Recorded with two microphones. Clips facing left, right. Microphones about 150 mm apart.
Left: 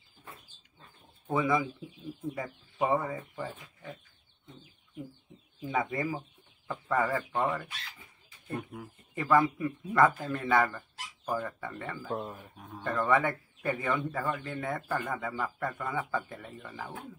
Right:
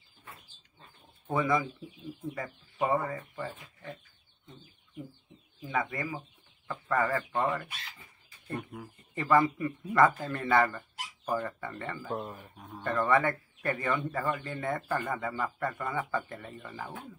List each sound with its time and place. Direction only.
1.3 s speech: 5° left (ahead or behind)
5.6 s speech: 20° left (ahead or behind)
6.7 s a man's voice: 10° left (ahead or behind)